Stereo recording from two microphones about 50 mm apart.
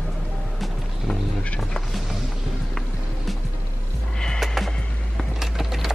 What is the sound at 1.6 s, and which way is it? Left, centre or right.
Music, centre.